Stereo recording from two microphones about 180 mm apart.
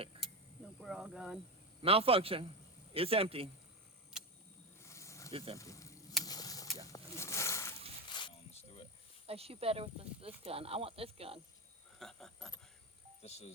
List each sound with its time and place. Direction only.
0.1 s a sound: 30° right (ahead or behind)
0.8 s speech: centre (ahead or behind)
1.8 s speech: 30° right (ahead or behind)
4.8 s snake: 15° left (ahead or behind)
5.5 s a sound: 15° left (ahead or behind)
8.1 s a sound: 25° left (ahead or behind)
9.2 s speech: 35° right (ahead or behind)
11.9 s speech: centre (ahead or behind)
13.2 s speech: 35° left (ahead or behind)